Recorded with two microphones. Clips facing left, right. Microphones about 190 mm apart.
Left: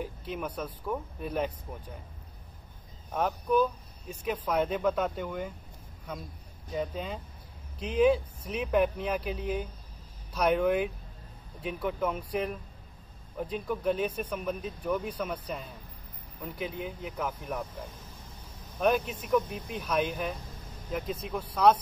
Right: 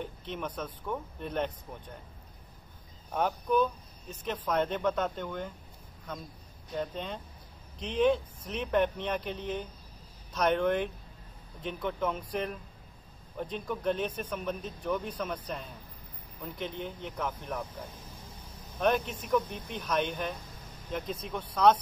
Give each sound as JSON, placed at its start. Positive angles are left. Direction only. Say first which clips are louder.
{"t": 0.0, "sound": "speech", "louder": "left 2 dB", "side_deg": 5}
{"t": 3.1, "sound": "speech", "louder": "left 1 dB", "side_deg": 0}
{"t": 18.8, "sound": "speech", "louder": "left 1 dB", "side_deg": 5}